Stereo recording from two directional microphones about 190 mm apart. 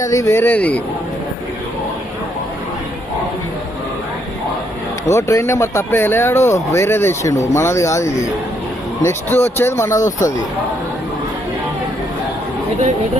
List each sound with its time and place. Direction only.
0.0 s speech: 15° left (ahead or behind)
5.0 s speech: 15° left (ahead or behind)